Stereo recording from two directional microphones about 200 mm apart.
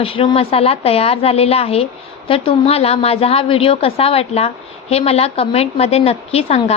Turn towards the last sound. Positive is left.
turn(degrees=30)  # may be behind; listen again after turning